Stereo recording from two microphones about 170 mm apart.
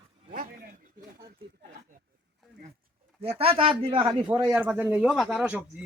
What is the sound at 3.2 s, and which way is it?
Speech, 35° right (ahead or behind).